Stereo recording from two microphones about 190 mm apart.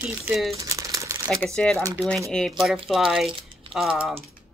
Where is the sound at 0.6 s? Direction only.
20° right (ahead or behind).